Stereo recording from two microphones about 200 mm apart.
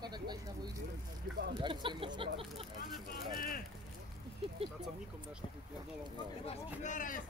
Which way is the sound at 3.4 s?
45° left (ahead or behind).